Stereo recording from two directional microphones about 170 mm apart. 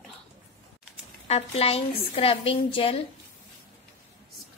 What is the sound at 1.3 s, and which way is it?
A woman's voice, 35° left (ahead or behind).